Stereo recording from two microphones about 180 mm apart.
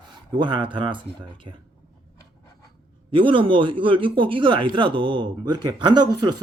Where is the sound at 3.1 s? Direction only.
30° right (ahead or behind).